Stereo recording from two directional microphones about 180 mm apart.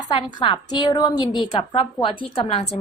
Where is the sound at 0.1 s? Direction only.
25° left (ahead or behind).